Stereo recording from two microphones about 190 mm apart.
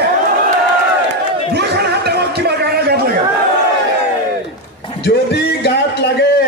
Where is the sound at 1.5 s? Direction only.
60° right (ahead or behind).